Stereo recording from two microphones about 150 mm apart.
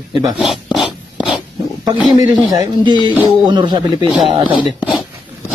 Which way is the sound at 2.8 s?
30° right (ahead or behind).